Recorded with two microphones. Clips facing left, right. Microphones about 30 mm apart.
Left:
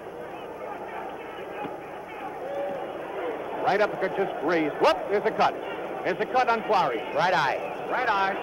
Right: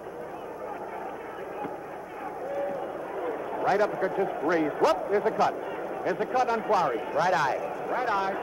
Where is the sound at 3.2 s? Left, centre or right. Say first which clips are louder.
Left 1 dB; left.